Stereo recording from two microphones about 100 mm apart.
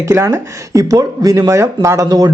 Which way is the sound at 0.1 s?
30° right (ahead or behind).